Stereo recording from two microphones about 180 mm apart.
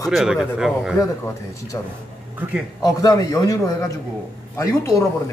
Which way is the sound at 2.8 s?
20° left (ahead or behind).